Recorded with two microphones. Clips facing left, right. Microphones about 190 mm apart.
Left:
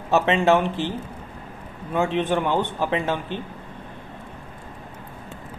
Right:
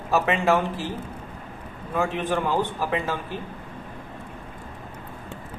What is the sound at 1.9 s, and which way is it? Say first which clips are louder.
A man's voice: left 3 dB; 25° left (ahead or behind).